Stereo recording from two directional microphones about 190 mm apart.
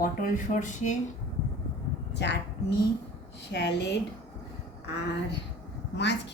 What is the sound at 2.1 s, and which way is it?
A woman's voice, 65° left (ahead or behind).